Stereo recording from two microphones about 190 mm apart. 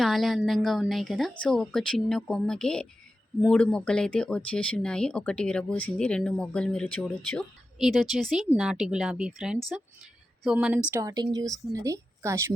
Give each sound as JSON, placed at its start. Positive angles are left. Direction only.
{"t": 0.0, "sound": "speech", "side_deg": 0}
{"t": 10.9, "sound": "a woman's voice", "side_deg": -20}